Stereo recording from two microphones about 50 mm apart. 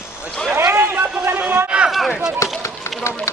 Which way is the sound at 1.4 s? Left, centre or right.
Right.